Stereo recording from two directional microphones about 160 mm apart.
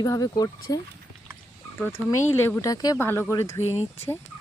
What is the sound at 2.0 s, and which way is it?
Speech, 20° left (ahead or behind).